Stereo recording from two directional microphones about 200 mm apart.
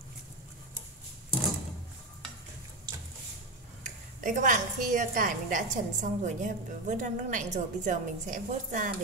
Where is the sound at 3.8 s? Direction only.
40° right (ahead or behind).